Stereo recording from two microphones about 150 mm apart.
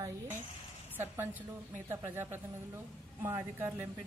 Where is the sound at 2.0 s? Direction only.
15° right (ahead or behind).